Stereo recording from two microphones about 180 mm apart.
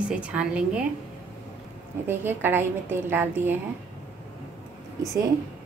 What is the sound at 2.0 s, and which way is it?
A woman's voice, 10° right (ahead or behind).